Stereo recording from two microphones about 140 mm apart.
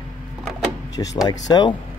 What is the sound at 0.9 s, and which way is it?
Speech, 25° left (ahead or behind).